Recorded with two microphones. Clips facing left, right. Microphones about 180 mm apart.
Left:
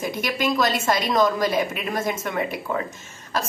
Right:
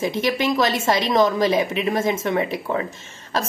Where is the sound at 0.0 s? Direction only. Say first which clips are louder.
Right 4 dB; 25° right (ahead or behind).